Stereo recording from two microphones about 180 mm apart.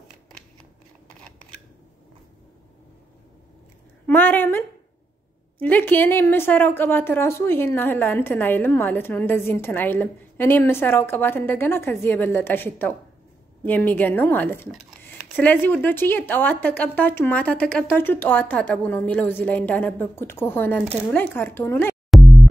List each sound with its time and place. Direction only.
4.0 s a woman's voice: 10° left (ahead or behind)
22.1 s music: centre (ahead or behind)